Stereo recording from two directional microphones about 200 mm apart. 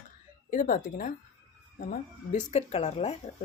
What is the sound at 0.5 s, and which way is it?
Speech, 40° left (ahead or behind).